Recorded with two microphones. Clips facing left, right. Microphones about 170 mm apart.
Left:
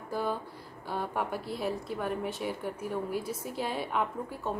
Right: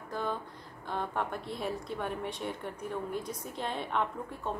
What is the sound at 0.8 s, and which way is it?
A woman's voice, 5° left (ahead or behind).